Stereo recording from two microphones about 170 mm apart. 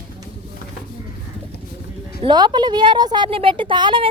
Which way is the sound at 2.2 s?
25° right (ahead or behind).